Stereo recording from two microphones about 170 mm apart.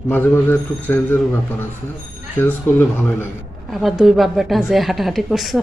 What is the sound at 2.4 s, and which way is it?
Speech, 10° left (ahead or behind).